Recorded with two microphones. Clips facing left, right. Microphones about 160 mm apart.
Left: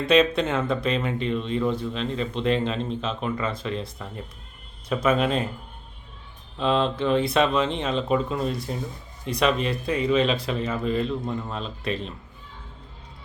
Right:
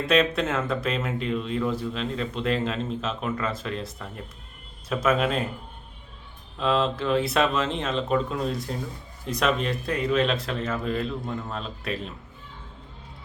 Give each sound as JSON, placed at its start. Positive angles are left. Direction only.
{"t": 0.1, "sound": "speech", "side_deg": 0}
{"t": 6.6, "sound": "speech", "side_deg": 0}